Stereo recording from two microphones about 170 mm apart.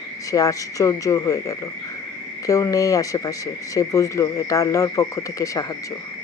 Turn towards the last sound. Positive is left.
turn(degrees=20)  # may be behind; listen again after turning